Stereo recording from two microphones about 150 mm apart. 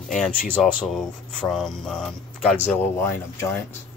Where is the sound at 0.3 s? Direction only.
70° left (ahead or behind).